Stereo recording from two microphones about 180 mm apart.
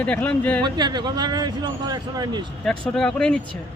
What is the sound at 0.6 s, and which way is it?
Speech, 25° right (ahead or behind).